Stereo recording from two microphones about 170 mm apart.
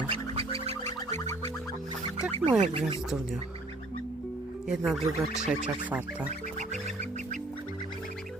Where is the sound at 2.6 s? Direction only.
35° right (ahead or behind).